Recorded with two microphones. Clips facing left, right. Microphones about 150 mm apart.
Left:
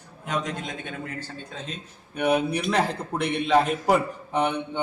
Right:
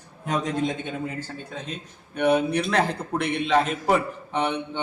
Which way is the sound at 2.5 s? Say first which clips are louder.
Right 1 dB; 10° left (ahead or behind).